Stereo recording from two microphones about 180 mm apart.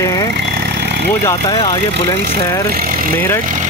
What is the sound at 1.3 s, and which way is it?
Speech, 25° left (ahead or behind).